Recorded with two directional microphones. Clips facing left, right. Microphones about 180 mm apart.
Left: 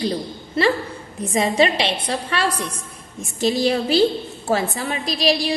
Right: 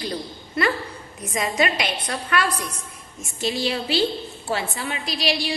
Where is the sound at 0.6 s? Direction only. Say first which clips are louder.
Left 4 dB; 30° left (ahead or behind).